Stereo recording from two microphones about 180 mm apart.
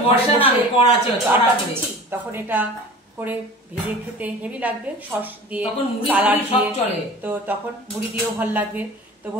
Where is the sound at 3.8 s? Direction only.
10° right (ahead or behind).